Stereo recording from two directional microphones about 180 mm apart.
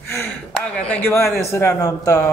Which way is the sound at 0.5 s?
10° left (ahead or behind).